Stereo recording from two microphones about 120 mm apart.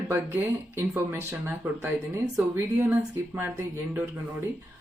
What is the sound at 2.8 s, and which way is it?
Speech, 20° right (ahead or behind).